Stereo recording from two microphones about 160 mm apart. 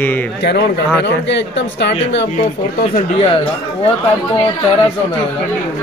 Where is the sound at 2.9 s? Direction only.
40° left (ahead or behind).